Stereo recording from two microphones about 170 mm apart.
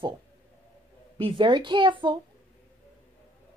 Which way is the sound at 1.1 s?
30° right (ahead or behind).